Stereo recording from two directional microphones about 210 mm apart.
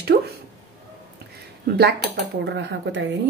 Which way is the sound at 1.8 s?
50° right (ahead or behind).